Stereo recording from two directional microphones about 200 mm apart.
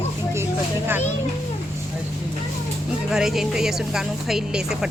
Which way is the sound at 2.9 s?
5° right (ahead or behind).